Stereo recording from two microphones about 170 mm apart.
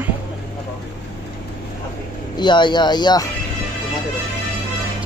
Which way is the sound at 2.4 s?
25° left (ahead or behind).